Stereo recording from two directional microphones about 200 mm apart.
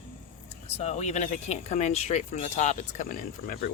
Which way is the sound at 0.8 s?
35° left (ahead or behind).